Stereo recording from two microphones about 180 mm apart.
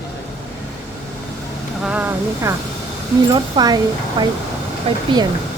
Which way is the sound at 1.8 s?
5° right (ahead or behind).